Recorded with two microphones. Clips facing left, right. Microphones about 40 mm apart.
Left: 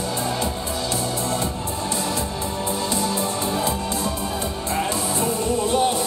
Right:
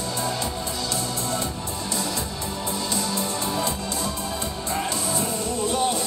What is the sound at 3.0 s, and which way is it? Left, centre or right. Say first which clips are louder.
Music: left 3 dB; centre.